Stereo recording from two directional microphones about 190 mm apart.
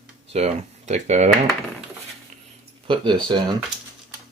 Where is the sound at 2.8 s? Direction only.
25° right (ahead or behind).